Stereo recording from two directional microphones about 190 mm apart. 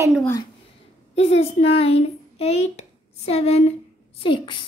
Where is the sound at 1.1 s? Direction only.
35° left (ahead or behind).